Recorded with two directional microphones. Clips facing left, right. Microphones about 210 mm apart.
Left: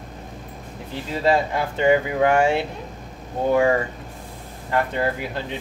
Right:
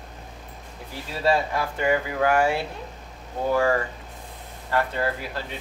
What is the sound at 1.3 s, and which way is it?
Speech, 25° left (ahead or behind).